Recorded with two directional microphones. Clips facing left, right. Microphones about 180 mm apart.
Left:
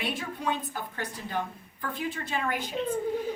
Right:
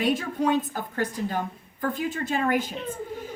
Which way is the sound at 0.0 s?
45° right (ahead or behind).